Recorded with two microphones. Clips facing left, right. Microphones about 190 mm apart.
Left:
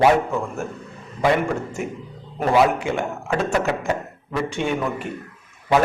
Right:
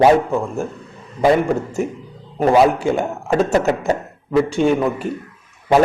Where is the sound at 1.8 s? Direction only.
35° right (ahead or behind).